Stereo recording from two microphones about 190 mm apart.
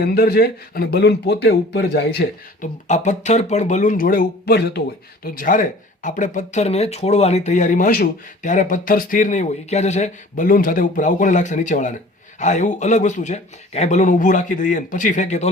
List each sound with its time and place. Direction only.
0.0 s speech: 55° left (ahead or behind)
2.6 s speech: 40° left (ahead or behind); by 4.8 s 60° left (ahead or behind)
5.2 s speech: 50° left (ahead or behind)